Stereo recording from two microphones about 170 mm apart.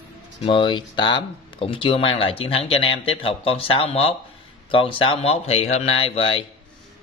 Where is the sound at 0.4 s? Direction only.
30° left (ahead or behind).